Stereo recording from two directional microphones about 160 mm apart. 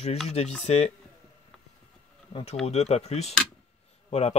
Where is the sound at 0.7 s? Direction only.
40° left (ahead or behind).